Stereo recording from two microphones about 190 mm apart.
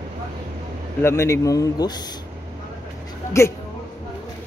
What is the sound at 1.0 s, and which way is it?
A man's voice, 15° left (ahead or behind).